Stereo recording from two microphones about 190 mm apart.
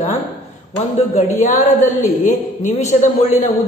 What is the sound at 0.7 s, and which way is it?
A man's voice, 35° left (ahead or behind).